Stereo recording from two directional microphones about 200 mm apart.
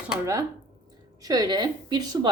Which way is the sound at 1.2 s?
20° right (ahead or behind).